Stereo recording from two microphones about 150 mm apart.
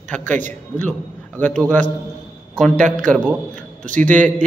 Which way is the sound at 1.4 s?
10° left (ahead or behind).